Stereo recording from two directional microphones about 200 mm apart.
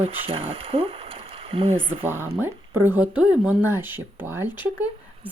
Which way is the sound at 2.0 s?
10° right (ahead or behind).